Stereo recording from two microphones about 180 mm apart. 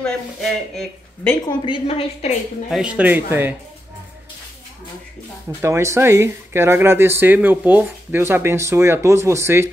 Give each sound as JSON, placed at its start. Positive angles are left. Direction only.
{"t": 0.0, "sound": "speech", "side_deg": 5}
{"t": 1.6, "sound": "a woman's voice", "side_deg": 30}
{"t": 2.7, "sound": "speech", "side_deg": -5}
{"t": 5.6, "sound": "speech", "side_deg": -15}